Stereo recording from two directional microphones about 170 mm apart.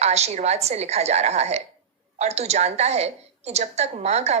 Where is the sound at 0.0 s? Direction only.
40° right (ahead or behind).